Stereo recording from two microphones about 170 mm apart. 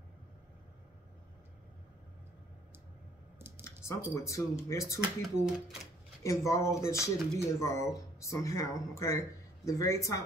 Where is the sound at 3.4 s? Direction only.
15° right (ahead or behind).